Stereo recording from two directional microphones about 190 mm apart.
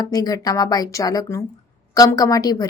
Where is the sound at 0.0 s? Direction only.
20° left (ahead or behind).